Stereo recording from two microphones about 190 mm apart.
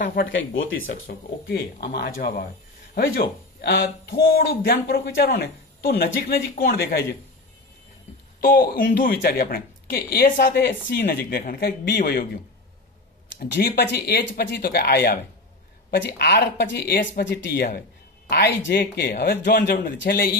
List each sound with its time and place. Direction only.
0.0 s speech: 50° left (ahead or behind)
0.3 s speech: 85° left
0.8 s speech: 50° left (ahead or behind)
8.4 s speech: 50° left (ahead or behind)
13.4 s speech: 55° left (ahead or behind)
17.4 s speech: 50° left (ahead or behind)